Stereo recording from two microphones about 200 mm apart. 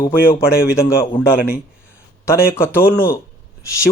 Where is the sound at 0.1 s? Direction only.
10° left (ahead or behind).